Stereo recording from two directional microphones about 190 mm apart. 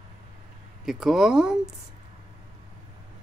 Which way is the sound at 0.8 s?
Centre (ahead or behind).